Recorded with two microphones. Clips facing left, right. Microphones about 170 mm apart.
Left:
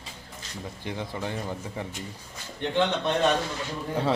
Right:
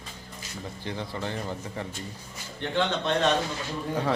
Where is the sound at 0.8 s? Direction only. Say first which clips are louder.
Left 1 dB; 15° left (ahead or behind).